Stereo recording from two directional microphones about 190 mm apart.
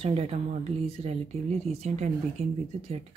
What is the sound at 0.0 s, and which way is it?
Speech, 35° right (ahead or behind).